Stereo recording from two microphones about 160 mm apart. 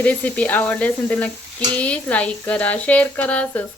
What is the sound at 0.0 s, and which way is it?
A woman's voice, 10° left (ahead or behind).